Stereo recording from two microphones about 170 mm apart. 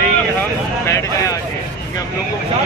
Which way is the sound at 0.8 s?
15° left (ahead or behind).